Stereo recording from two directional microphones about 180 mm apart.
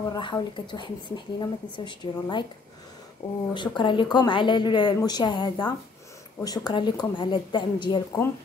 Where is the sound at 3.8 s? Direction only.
25° left (ahead or behind).